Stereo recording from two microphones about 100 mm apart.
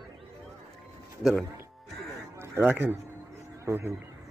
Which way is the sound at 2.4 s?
20° right (ahead or behind).